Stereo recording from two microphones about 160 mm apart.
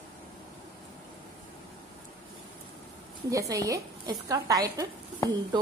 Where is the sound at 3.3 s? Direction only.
20° right (ahead or behind).